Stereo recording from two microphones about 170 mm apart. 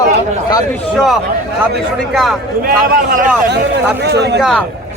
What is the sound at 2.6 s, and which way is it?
Speech, 55° right (ahead or behind).